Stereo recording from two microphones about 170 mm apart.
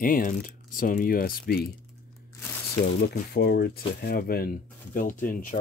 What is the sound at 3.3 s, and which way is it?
Speech, 75° left (ahead or behind).